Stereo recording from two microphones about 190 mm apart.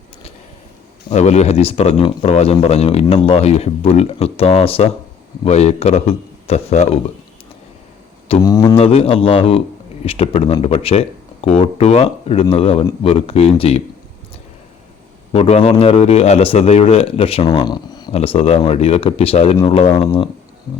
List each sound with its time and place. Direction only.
1.1 s speech: 35° left (ahead or behind)
8.4 s speech: 20° left (ahead or behind)
8.8 s speech: 30° left (ahead or behind)
15.3 s speech: 30° left (ahead or behind)
18.1 s speech: 30° left (ahead or behind)